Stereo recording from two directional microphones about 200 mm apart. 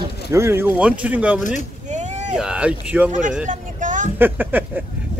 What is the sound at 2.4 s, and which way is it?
Speech, 5° right (ahead or behind).